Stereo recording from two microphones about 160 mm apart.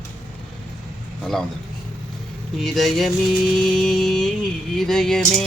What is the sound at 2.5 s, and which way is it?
Speech, centre (ahead or behind).